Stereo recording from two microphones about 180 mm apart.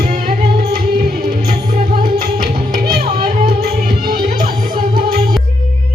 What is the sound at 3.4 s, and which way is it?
Music, 55° right (ahead or behind).